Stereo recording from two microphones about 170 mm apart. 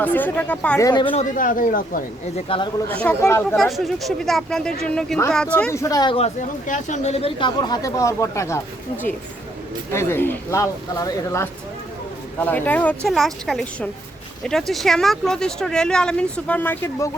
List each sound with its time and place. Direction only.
0.0 s speech: 10° left (ahead or behind)
1.1 s speech: 50° left (ahead or behind)
3.0 s speech: 10° left (ahead or behind)
3.6 s speech: centre (ahead or behind); by 6.1 s 20° left (ahead or behind)
6.1 s speech: 45° left (ahead or behind); by 8.6 s 15° left (ahead or behind)
9.9 s speech: 15° left (ahead or behind)